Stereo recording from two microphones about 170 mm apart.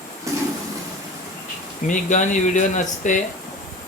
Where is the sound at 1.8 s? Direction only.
45° left (ahead or behind).